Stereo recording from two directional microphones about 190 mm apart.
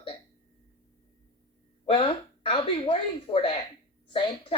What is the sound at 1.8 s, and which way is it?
Speech, 25° left (ahead or behind).